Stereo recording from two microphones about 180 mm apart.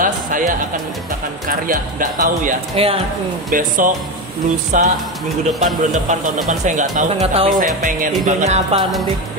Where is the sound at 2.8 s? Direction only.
35° right (ahead or behind).